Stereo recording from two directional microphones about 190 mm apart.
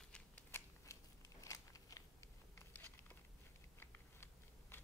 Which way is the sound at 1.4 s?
20° left (ahead or behind).